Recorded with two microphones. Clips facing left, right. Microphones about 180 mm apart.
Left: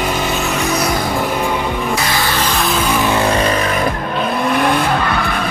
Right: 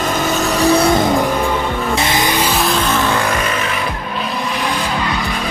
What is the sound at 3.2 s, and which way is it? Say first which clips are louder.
Vehicle: left 4 dB; 35° left (ahead or behind).